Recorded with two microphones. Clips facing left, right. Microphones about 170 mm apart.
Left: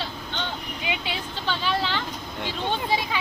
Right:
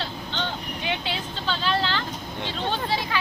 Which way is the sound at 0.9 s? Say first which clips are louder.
Right 1 dB; 10° left (ahead or behind).